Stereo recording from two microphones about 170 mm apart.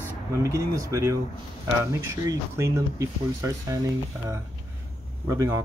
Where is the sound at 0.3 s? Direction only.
15° right (ahead or behind).